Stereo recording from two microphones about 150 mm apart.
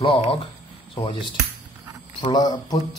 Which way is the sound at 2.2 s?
30° left (ahead or behind).